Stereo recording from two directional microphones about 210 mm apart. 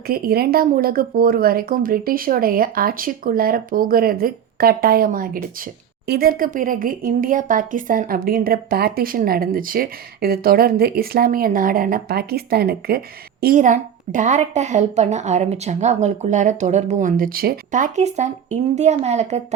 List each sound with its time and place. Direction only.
0.1 s a woman's voice: 45° right (ahead or behind)